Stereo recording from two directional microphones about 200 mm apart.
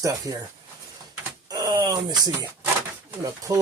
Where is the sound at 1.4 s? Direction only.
20° right (ahead or behind).